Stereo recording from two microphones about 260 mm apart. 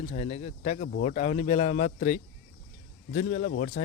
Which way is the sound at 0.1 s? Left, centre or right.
Left.